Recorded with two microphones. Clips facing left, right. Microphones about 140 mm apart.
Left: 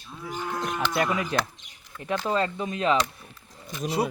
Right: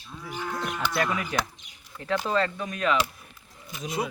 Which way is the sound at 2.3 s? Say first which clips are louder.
Left 2 dB; 20° left (ahead or behind).